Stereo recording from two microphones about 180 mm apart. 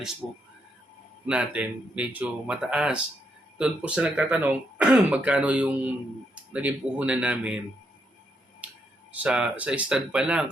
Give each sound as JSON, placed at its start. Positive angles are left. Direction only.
{"t": 0.2, "sound": "speech", "side_deg": -5}
{"t": 8.6, "sound": "finger snapping", "side_deg": -5}
{"t": 9.1, "sound": "speech", "side_deg": -5}